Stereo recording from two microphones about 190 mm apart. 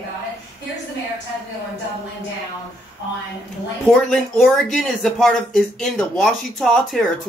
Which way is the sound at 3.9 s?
Centre (ahead or behind).